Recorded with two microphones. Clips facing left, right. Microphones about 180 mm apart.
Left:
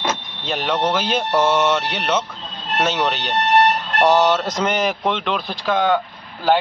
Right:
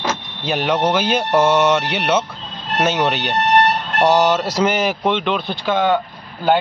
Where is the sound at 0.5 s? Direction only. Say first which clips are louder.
Right 3 dB; 5° right (ahead or behind).